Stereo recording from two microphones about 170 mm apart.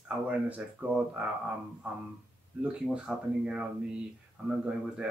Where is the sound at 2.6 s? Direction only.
5° right (ahead or behind).